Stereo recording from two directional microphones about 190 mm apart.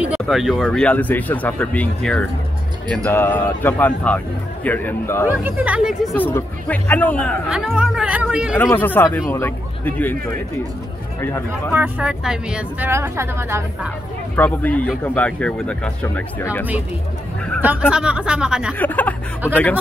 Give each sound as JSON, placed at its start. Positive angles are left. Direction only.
{"t": 0.0, "sound": "speech", "side_deg": -5}
{"t": 5.3, "sound": "speech", "side_deg": -10}
{"t": 6.1, "sound": "speech", "side_deg": 10}
{"t": 7.4, "sound": "speech", "side_deg": -5}
{"t": 8.5, "sound": "speech", "side_deg": 10}
{"t": 11.1, "sound": "speech", "side_deg": 15}
{"t": 11.7, "sound": "speech", "side_deg": -10}
{"t": 14.3, "sound": "speech", "side_deg": 10}
{"t": 17.6, "sound": "speech", "side_deg": -5}
{"t": 18.8, "sound": "speech", "side_deg": 10}